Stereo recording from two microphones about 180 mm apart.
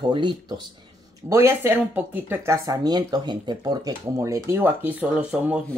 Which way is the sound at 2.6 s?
20° right (ahead or behind).